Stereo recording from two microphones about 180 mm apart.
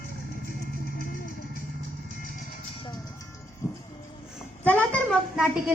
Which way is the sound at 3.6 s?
15° left (ahead or behind).